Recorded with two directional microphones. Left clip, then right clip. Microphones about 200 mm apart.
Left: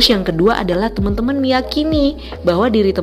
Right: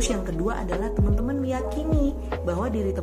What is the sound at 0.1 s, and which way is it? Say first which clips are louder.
A woman's voice: left 13 dB; 45° left (ahead or behind).